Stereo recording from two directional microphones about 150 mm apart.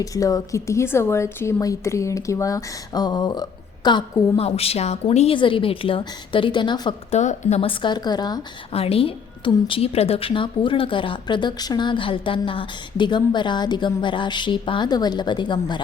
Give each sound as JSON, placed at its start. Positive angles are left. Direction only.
{"t": 0.0, "sound": "a woman's voice", "side_deg": 25}
{"t": 4.4, "sound": "a woman's voice", "side_deg": 40}
{"t": 7.1, "sound": "a woman's voice", "side_deg": 50}
{"t": 8.7, "sound": "a woman's voice", "side_deg": 40}